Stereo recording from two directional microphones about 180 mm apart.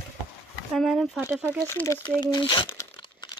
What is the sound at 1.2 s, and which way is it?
Speech, 10° right (ahead or behind).